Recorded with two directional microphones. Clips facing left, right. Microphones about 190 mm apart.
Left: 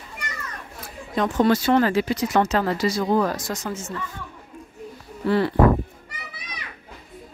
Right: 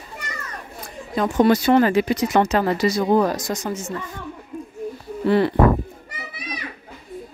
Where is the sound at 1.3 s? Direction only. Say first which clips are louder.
Right 3 dB; 15° right (ahead or behind).